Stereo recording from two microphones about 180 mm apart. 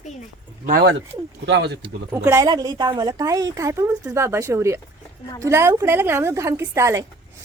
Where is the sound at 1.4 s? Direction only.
75° right (ahead or behind).